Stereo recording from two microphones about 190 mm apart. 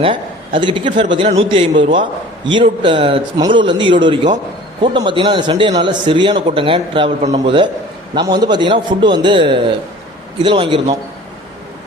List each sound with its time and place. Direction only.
0.0 s a man's voice: 25° right (ahead or behind)